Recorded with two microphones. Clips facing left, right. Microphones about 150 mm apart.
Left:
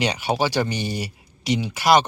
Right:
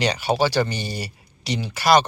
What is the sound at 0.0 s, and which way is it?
Speech, 15° left (ahead or behind).